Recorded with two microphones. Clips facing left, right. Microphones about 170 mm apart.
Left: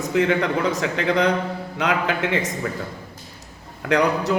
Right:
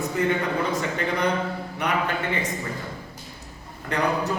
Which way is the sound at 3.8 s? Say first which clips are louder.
Left 5 dB; 90° left.